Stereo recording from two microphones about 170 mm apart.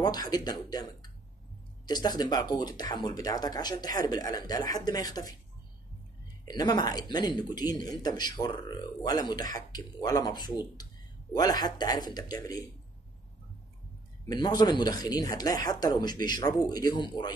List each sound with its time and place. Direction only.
0.0 s speech: 25° left (ahead or behind)
6.4 s speech: 25° left (ahead or behind)
14.3 s speech: 25° left (ahead or behind)